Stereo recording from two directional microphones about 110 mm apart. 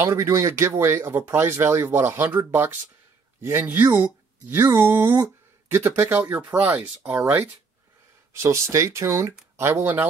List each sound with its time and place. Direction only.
0.0 s speech: 25° right (ahead or behind)